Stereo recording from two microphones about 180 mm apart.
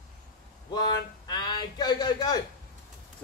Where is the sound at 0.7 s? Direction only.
25° left (ahead or behind).